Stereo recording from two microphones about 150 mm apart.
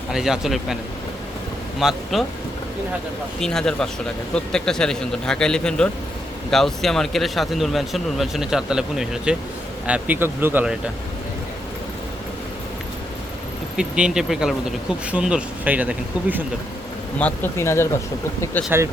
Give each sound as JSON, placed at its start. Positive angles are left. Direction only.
{"t": 0.1, "sound": "speech", "side_deg": -5}
{"t": 1.8, "sound": "speech", "side_deg": 0}
{"t": 3.4, "sound": "speech", "side_deg": 5}
{"t": 13.7, "sound": "speech", "side_deg": -5}
{"t": 17.2, "sound": "speech", "side_deg": 10}